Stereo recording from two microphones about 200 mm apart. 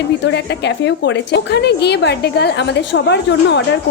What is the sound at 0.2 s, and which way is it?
A woman's voice, 60° left (ahead or behind).